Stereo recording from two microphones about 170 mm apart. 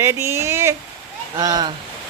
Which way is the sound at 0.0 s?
15° right (ahead or behind).